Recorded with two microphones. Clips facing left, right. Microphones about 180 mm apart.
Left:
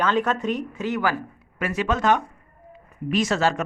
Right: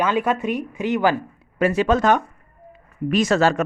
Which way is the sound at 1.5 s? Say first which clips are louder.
Right 7 dB; 30° right (ahead or behind).